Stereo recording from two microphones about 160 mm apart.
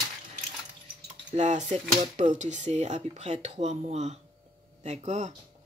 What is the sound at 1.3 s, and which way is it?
Speech, 50° right (ahead or behind).